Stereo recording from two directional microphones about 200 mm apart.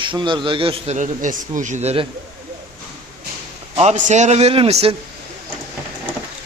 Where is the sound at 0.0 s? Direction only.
25° right (ahead or behind).